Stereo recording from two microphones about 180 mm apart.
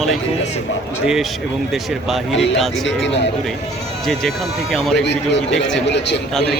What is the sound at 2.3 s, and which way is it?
Speech, 90° left.